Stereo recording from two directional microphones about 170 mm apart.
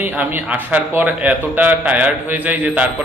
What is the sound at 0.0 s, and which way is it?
A man's voice, 10° right (ahead or behind).